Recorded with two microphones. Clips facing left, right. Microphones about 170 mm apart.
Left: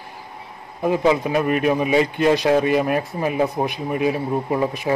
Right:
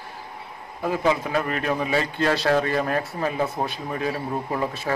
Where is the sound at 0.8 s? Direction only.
20° left (ahead or behind).